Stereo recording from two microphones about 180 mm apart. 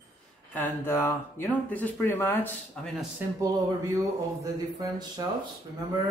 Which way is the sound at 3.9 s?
20° right (ahead or behind).